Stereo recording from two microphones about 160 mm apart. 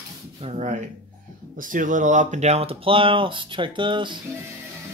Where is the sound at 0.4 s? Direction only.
45° right (ahead or behind).